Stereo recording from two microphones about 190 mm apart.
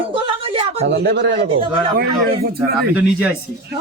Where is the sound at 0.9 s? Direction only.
65° right (ahead or behind).